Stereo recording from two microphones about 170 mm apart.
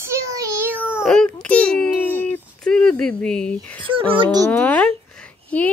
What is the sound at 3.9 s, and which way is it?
Speech, 30° right (ahead or behind).